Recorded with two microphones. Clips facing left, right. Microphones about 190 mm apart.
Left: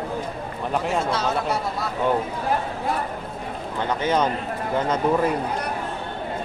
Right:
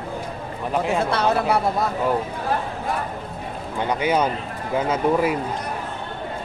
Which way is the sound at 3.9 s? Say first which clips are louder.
Right 1 dB; 10° right (ahead or behind).